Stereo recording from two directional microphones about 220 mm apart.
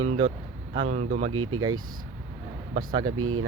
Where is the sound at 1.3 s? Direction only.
75° right (ahead or behind).